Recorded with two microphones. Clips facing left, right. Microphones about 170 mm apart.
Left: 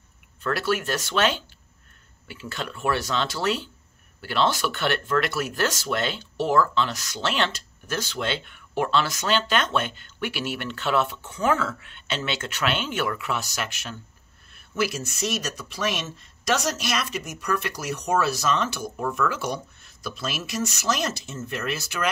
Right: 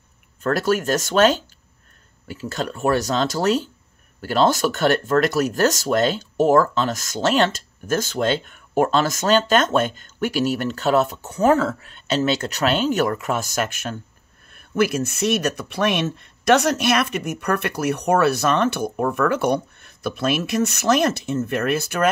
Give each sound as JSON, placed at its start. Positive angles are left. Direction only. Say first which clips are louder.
{"t": 0.4, "sound": "speech", "louder": "right 5 dB", "side_deg": -45}